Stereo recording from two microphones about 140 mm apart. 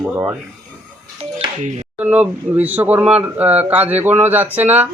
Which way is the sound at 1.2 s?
55° right (ahead or behind).